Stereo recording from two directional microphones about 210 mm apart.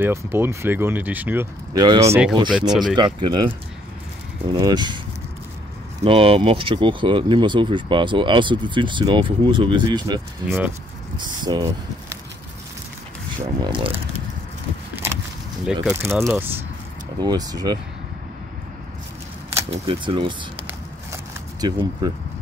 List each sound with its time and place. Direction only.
0.0 s speech: 10° right (ahead or behind)
2.7 s speech: centre (ahead or behind)
3.2 s speech: 20° right (ahead or behind)
4.5 s speech: 20° right (ahead or behind)
6.0 s speech: 25° right (ahead or behind)
13.4 s speech: 20° right (ahead or behind)
15.6 s speech: 10° right (ahead or behind)
19.7 s speech: 25° right (ahead or behind)
21.1 s a sound: 20° right (ahead or behind)